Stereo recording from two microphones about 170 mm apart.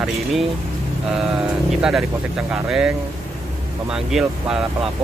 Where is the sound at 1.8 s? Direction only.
5° right (ahead or behind).